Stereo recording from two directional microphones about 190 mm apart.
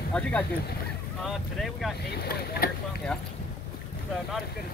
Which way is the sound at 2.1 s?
55° left (ahead or behind).